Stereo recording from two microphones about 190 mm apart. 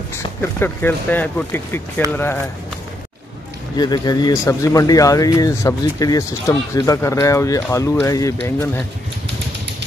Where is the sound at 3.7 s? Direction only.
20° left (ahead or behind).